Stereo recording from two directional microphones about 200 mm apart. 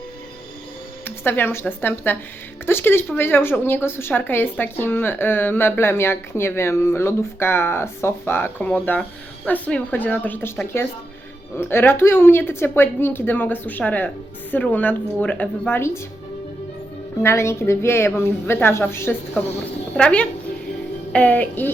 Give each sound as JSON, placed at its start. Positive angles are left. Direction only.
{"t": 1.0, "sound": "a woman's voice", "side_deg": 10}
{"t": 17.2, "sound": "a woman's voice", "side_deg": 15}